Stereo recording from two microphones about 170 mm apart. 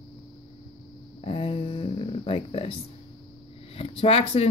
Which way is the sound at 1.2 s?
35° left (ahead or behind).